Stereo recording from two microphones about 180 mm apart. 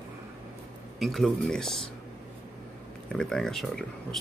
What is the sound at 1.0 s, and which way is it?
Speech, centre (ahead or behind).